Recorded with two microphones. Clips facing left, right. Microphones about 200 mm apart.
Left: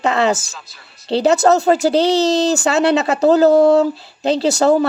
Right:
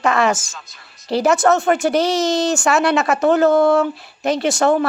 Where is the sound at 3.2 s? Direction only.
35° left (ahead or behind).